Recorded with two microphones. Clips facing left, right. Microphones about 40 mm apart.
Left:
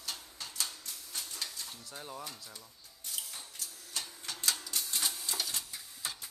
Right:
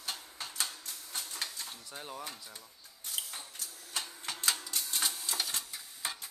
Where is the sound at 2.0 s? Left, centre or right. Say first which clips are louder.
Right 1 dB; centre.